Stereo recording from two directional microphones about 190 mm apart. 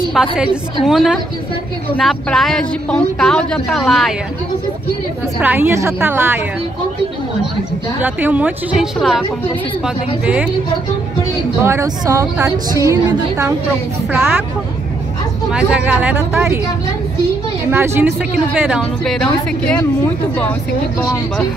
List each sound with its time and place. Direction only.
0.1 s a woman's voice: centre (ahead or behind)
5.4 s a woman's voice: 10° right (ahead or behind)
8.0 s a woman's voice: 10° right (ahead or behind)
11.6 s a woman's voice: 15° right (ahead or behind)
15.5 s a woman's voice: 5° right (ahead or behind)
17.6 s a woman's voice: 10° right (ahead or behind); by 19.9 s 5° left (ahead or behind)
21.0 s speech: 15° left (ahead or behind)